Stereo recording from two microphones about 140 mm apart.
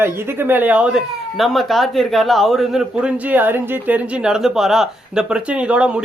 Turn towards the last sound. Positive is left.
turn(degrees=-10)  # may be behind; listen again after turning